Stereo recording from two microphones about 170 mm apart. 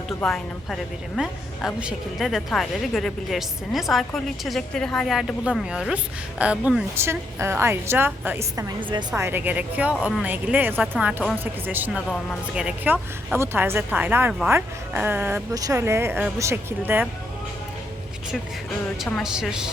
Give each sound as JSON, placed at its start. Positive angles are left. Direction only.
{"t": 0.2, "sound": "a woman's voice", "side_deg": 0}
{"t": 18.9, "sound": "a woman's voice", "side_deg": 0}